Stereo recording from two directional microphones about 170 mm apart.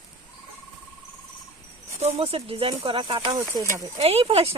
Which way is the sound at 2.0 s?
40° right (ahead or behind).